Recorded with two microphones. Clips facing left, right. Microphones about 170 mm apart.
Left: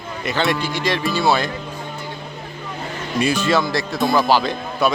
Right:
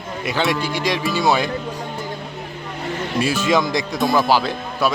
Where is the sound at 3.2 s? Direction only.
5° right (ahead or behind).